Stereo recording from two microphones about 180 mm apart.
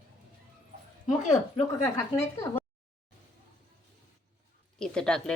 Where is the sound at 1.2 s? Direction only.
40° left (ahead or behind).